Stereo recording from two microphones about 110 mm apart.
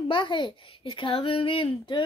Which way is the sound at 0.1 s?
50° left (ahead or behind).